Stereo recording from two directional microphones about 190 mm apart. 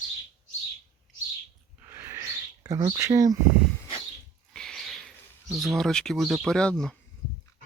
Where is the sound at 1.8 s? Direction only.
10° right (ahead or behind).